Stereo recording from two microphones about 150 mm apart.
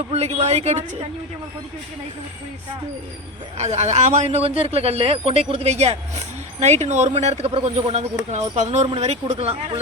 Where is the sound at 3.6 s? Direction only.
50° right (ahead or behind).